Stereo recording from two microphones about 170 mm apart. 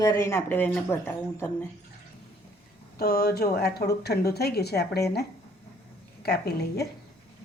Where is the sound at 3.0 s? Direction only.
65° left (ahead or behind).